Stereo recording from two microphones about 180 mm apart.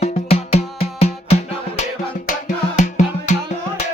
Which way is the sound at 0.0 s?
35° left (ahead or behind).